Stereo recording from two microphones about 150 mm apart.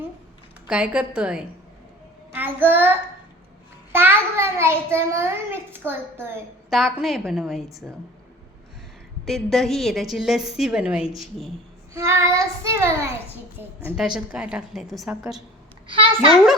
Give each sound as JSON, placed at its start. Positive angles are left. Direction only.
{"t": 0.7, "sound": "a woman's voice", "side_deg": -5}
{"t": 3.9, "sound": "a child's voice", "side_deg": -15}
{"t": 6.7, "sound": "a woman's voice", "side_deg": 0}
{"t": 9.2, "sound": "a woman's voice", "side_deg": 0}
{"t": 11.9, "sound": "child singing", "side_deg": -20}
{"t": 13.6, "sound": "a woman's voice", "side_deg": -15}
{"t": 13.9, "sound": "a woman's voice", "side_deg": -5}
{"t": 15.9, "sound": "a child's voice", "side_deg": -40}